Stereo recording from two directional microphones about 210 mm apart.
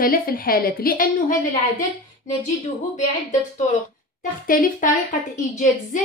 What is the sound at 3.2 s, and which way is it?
A woman's voice, 35° left (ahead or behind).